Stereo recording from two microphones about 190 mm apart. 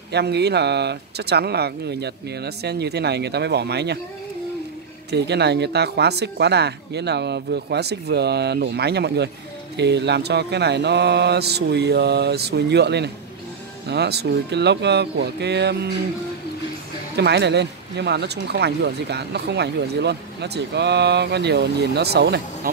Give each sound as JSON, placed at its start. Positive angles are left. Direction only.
{"t": 0.1, "sound": "speech", "side_deg": -60}
{"t": 5.1, "sound": "speech", "side_deg": -60}
{"t": 17.2, "sound": "speech", "side_deg": -65}